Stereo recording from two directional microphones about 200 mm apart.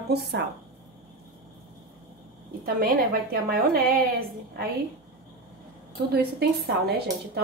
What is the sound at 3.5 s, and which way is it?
Speech, 45° right (ahead or behind).